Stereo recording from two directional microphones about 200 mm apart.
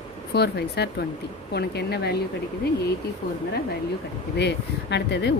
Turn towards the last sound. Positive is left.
turn(degrees=60)  # may be behind; listen again after turning